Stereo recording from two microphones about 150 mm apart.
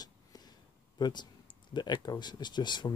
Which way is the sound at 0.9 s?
30° left (ahead or behind).